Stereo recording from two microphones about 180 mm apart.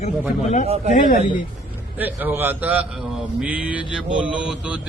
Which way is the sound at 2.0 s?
10° right (ahead or behind).